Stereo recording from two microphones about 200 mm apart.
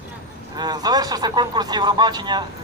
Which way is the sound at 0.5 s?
20° right (ahead or behind).